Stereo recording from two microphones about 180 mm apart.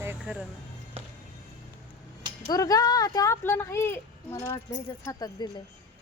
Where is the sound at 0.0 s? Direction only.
10° right (ahead or behind).